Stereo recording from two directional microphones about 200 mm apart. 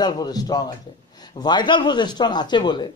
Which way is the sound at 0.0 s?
20° left (ahead or behind).